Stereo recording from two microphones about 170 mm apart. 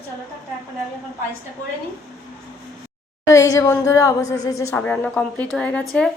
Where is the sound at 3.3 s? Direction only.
15° left (ahead or behind).